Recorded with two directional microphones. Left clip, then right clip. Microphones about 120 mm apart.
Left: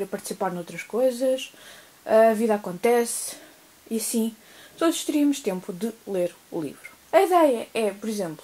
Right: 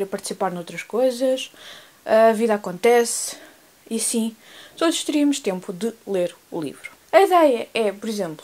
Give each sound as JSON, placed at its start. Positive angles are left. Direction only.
{"t": 0.0, "sound": "speech", "side_deg": -25}